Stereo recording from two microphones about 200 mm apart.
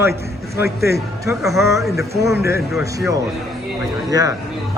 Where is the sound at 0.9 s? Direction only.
15° right (ahead or behind).